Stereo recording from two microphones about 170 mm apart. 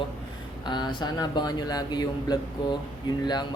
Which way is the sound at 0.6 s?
25° left (ahead or behind).